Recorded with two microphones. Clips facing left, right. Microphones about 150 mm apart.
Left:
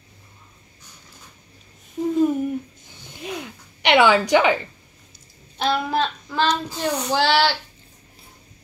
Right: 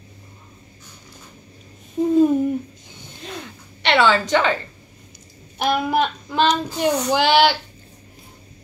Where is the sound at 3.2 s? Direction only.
10° left (ahead or behind).